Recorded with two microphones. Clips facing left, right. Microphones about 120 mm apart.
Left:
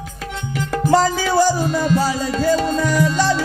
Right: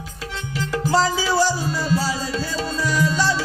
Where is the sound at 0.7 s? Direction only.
50° left (ahead or behind).